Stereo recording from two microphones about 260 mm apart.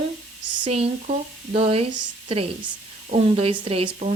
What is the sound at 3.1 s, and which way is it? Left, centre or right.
Speech, right.